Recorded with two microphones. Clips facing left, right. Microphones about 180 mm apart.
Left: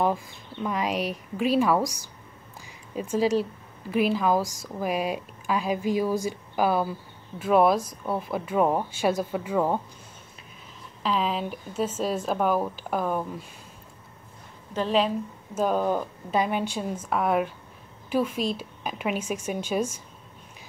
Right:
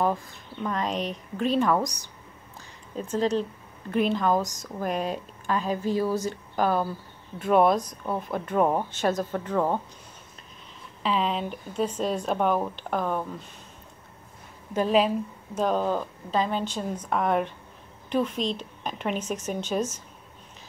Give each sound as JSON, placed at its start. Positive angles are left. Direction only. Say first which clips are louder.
{"t": 0.0, "sound": "speech", "louder": "left 1 dB", "side_deg": 10}
{"t": 3.0, "sound": "speech", "louder": "left 2 dB", "side_deg": 10}
{"t": 11.0, "sound": "speech", "louder": "even", "side_deg": 0}
{"t": 14.7, "sound": "a woman's voice", "louder": "right 2 dB", "side_deg": -10}
{"t": 15.5, "sound": "speech", "louder": "left 1 dB", "side_deg": 5}